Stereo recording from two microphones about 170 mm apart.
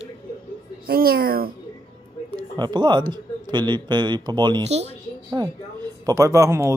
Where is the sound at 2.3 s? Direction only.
25° right (ahead or behind).